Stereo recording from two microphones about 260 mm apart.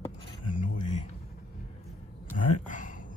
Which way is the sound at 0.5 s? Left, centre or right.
Left.